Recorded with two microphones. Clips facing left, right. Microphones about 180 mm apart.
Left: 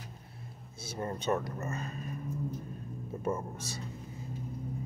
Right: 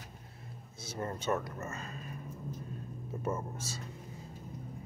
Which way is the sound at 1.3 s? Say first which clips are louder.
Left 3 dB; 35° left (ahead or behind).